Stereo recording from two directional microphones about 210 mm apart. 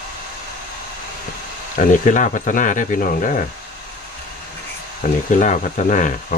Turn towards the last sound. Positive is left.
turn(degrees=35)  # may be behind; listen again after turning